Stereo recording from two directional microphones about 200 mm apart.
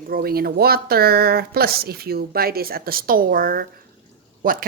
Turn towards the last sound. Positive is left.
turn(degrees=-45)  # may be behind; listen again after turning